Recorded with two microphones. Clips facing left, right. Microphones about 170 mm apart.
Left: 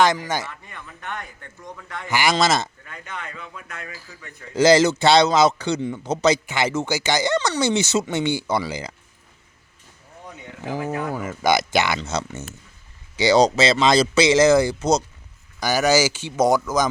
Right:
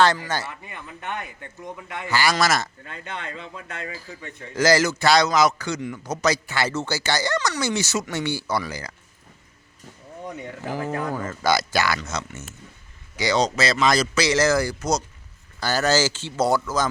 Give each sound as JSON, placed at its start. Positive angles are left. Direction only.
{"t": 0.0, "sound": "speech", "side_deg": 15}
{"t": 0.4, "sound": "a man's voice", "side_deg": -15}
{"t": 2.0, "sound": "a man's voice", "side_deg": 20}
{"t": 2.8, "sound": "a man's voice", "side_deg": -30}
{"t": 4.6, "sound": "a man's voice", "side_deg": 25}
{"t": 10.7, "sound": "a man's voice", "side_deg": 15}
{"t": 15.6, "sound": "speech", "side_deg": 10}